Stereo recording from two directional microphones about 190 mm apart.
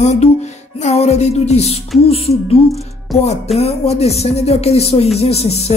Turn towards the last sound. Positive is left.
turn(degrees=35)  # may be behind; listen again after turning